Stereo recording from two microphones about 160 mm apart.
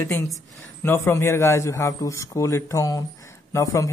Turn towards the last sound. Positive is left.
turn(degrees=20)  # may be behind; listen again after turning